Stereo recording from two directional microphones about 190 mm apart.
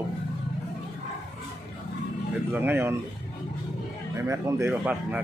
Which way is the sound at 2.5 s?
10° right (ahead or behind).